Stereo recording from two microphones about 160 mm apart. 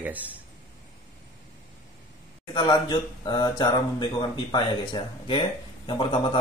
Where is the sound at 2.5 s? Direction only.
25° left (ahead or behind).